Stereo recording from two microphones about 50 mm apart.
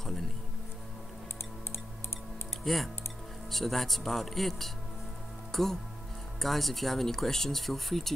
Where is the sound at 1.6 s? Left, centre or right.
Left.